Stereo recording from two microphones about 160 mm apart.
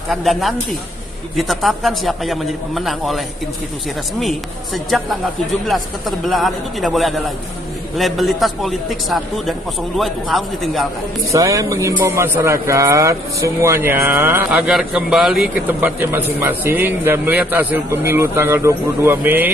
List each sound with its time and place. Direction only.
0.1 s a man's voice: centre (ahead or behind)
5.7 s a man's voice: centre (ahead or behind)
11.3 s speech: 20° right (ahead or behind)